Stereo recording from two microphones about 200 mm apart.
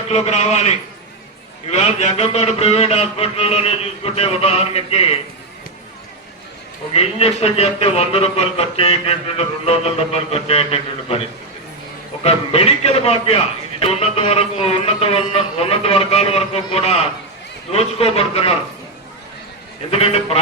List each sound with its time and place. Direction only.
0.1 s a man's voice: 35° left (ahead or behind)
1.7 s a man's voice: 35° left (ahead or behind)
6.9 s a man's voice: 30° left (ahead or behind)
12.2 s a man's voice: 30° left (ahead or behind)
19.9 s a man's voice: 30° left (ahead or behind)